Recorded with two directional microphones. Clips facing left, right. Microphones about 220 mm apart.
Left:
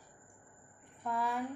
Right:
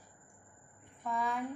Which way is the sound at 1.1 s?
5° left (ahead or behind).